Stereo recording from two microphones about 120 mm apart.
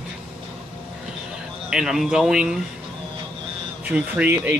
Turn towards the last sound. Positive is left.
turn(degrees=-15)  # may be behind; listen again after turning